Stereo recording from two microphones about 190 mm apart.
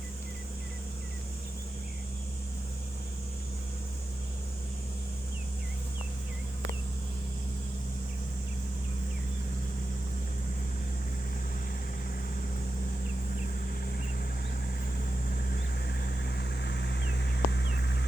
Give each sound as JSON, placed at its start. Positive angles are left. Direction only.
{"t": 15.4, "sound": "vehicle", "side_deg": 55}